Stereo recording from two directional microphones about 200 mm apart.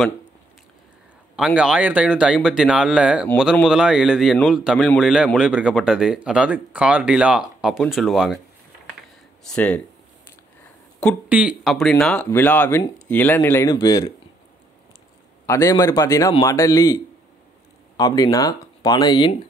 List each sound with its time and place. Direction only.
1.3 s speech: 5° right (ahead or behind)
9.5 s speech: 10° left (ahead or behind)
11.2 s speech: 5° right (ahead or behind); by 14.1 s 15° left (ahead or behind)
15.4 s speech: 15° left (ahead or behind)